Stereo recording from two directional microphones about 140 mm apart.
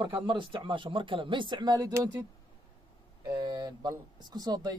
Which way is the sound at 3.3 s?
30° right (ahead or behind).